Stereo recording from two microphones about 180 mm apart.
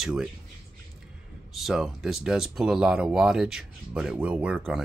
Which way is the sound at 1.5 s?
Centre (ahead or behind).